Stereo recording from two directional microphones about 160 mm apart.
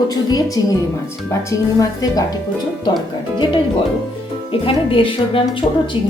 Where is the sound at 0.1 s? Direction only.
25° left (ahead or behind).